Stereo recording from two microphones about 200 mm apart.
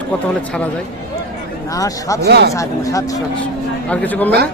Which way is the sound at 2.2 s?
55° right (ahead or behind).